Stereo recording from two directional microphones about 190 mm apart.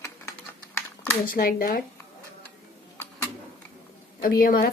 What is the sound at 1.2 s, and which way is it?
Speech, 50° left (ahead or behind).